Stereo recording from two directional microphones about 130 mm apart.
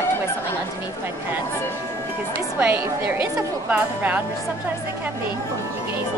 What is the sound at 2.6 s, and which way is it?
A woman's voice, 15° right (ahead or behind).